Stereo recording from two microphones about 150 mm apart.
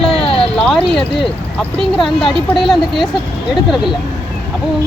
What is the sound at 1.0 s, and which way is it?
Speech, 35° left (ahead or behind).